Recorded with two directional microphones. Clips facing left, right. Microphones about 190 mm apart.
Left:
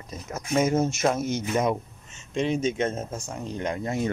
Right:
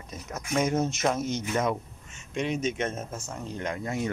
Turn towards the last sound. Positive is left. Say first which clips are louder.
# left 3 dB
turn(degrees=30)  # may be behind; listen again after turning